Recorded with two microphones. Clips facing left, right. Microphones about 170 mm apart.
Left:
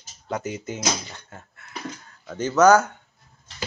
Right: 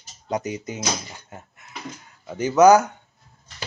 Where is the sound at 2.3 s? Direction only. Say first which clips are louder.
Right 2 dB; 10° right (ahead or behind).